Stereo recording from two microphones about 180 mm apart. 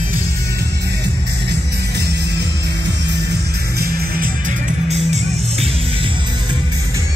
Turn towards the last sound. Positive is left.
turn(degrees=-35)  # may be behind; listen again after turning